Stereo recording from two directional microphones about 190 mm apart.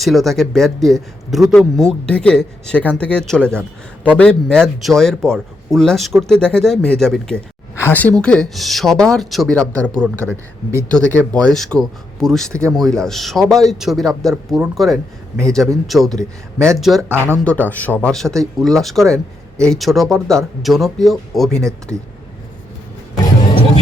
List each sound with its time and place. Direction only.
0.0 s speech: centre (ahead or behind)
17.1 s speech: 10° right (ahead or behind)
17.7 s a man's voice: 10° left (ahead or behind)